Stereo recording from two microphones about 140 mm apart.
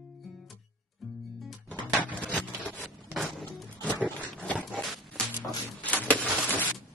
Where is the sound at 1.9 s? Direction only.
10° right (ahead or behind).